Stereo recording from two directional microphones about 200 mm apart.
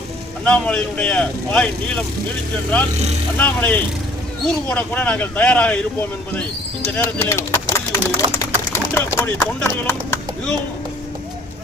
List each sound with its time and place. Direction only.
0.4 s speech: 5° left (ahead or behind)
3.3 s speech: 10° left (ahead or behind)
8.4 s a sound: 15° left (ahead or behind)
9.1 s speech: 15° left (ahead or behind)